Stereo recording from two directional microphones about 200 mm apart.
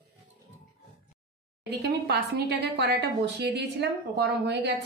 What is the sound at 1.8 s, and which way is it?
A woman's voice, 55° right (ahead or behind).